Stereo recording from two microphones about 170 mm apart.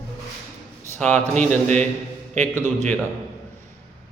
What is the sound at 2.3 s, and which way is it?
Speech, 10° left (ahead or behind).